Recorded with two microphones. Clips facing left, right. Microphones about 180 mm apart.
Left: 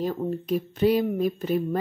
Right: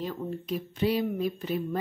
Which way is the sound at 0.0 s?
45° left (ahead or behind).